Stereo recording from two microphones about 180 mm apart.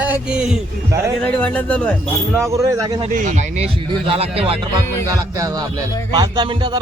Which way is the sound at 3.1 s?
45° right (ahead or behind).